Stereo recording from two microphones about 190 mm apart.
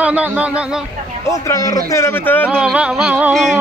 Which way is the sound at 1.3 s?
15° left (ahead or behind).